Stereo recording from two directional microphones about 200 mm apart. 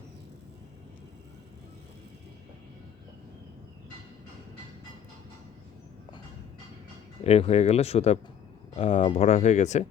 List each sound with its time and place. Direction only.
7.3 s speech: 30° left (ahead or behind)